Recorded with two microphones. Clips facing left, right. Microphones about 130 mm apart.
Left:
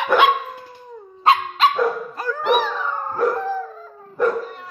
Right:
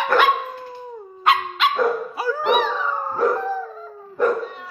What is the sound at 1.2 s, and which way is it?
Dog, 30° left (ahead or behind).